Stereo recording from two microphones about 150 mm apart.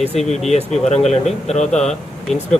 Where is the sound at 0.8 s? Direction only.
50° left (ahead or behind).